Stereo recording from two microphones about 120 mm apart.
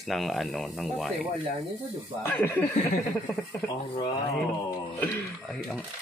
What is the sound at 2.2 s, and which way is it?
Speech, 20° left (ahead or behind).